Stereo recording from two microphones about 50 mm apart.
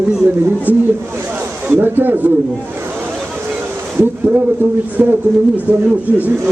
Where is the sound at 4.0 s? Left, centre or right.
Right.